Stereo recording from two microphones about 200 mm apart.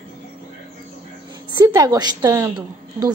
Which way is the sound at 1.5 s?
20° right (ahead or behind).